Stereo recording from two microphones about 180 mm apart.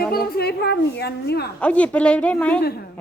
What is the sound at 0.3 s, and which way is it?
A woman's voice, 60° left (ahead or behind).